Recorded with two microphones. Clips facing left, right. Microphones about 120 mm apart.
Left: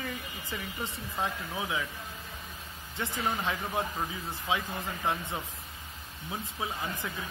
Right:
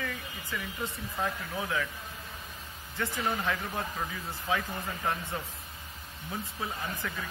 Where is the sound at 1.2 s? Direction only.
20° left (ahead or behind).